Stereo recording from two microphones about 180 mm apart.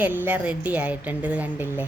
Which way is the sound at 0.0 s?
10° right (ahead or behind).